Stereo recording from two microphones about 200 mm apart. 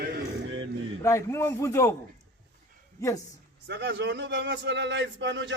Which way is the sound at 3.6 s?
60° right (ahead or behind).